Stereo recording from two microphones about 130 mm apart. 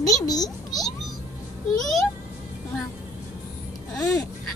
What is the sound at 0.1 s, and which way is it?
Speech, 30° left (ahead or behind).